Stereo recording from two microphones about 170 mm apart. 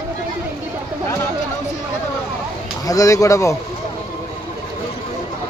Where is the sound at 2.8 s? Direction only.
20° left (ahead or behind).